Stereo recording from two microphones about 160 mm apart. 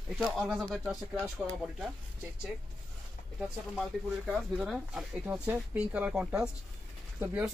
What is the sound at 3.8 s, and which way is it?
Speech, centre (ahead or behind).